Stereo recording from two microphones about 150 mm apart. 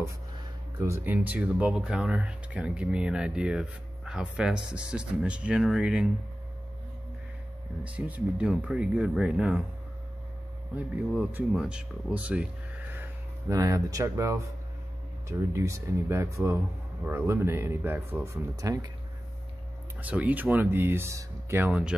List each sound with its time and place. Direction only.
0.7 s speech: 20° right (ahead or behind)
7.8 s speech: 10° right (ahead or behind)
11.1 s speech: 5° right (ahead or behind)
13.5 s speech: 20° right (ahead or behind)
20.0 s speech: 10° right (ahead or behind)